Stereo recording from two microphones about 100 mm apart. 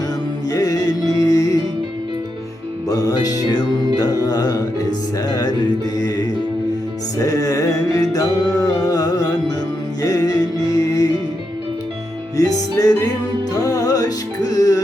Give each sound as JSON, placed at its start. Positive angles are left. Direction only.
{"t": 0.5, "sound": "music", "side_deg": 40}
{"t": 2.9, "sound": "music", "side_deg": 40}
{"t": 12.4, "sound": "music", "side_deg": 40}